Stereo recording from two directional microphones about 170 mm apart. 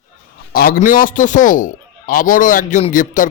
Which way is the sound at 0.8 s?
55° left (ahead or behind).